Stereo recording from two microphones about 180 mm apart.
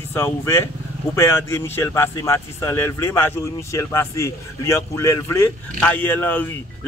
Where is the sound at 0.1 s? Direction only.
15° left (ahead or behind).